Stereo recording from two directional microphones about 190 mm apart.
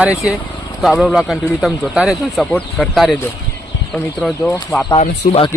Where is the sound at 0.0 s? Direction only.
5° right (ahead or behind).